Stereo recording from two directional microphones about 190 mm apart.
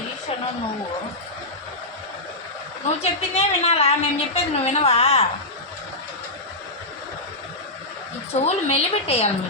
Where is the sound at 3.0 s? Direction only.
35° left (ahead or behind).